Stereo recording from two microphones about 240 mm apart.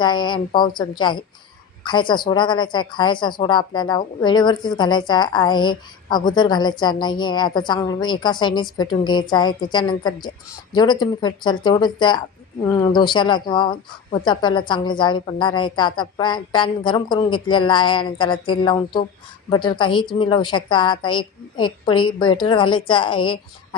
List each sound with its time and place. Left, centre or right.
0.0 s a woman's voice: centre